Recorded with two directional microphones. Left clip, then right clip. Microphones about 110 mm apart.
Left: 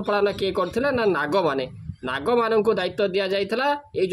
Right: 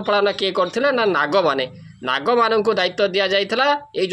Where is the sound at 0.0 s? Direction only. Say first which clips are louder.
Right 4 dB; 30° left (ahead or behind).